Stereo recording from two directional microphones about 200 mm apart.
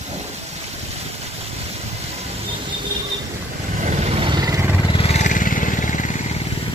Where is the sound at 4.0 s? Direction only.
30° right (ahead or behind).